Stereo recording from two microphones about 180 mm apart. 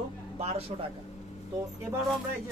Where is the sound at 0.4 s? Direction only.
35° right (ahead or behind).